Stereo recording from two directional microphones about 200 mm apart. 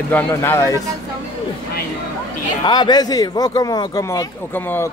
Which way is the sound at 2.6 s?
20° left (ahead or behind).